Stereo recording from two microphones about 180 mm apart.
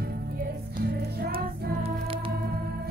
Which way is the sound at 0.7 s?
55° right (ahead or behind).